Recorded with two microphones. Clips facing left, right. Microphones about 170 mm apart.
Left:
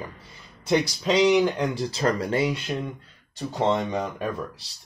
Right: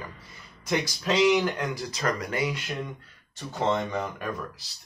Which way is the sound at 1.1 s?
15° left (ahead or behind).